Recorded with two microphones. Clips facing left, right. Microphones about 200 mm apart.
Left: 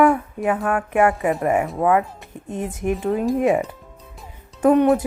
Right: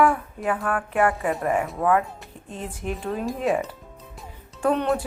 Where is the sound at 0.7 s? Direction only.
10° left (ahead or behind).